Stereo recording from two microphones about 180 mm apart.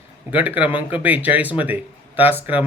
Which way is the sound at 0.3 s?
10° right (ahead or behind).